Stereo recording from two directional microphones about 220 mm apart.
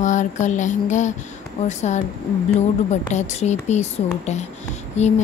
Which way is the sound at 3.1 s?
30° left (ahead or behind).